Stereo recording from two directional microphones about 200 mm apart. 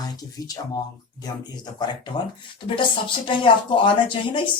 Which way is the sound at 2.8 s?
25° left (ahead or behind).